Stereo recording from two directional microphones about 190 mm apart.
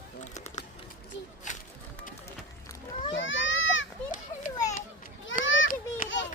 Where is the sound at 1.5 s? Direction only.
40° left (ahead or behind).